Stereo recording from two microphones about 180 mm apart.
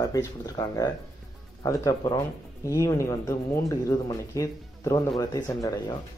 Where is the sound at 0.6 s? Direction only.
25° left (ahead or behind).